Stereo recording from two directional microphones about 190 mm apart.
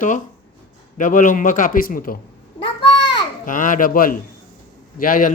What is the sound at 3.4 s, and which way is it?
A woman's voice, 45° left (ahead or behind).